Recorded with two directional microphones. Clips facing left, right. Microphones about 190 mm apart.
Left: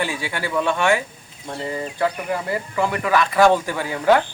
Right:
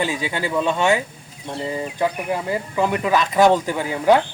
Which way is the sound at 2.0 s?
15° right (ahead or behind).